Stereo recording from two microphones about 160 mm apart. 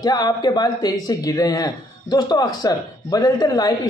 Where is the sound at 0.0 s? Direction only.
25° left (ahead or behind).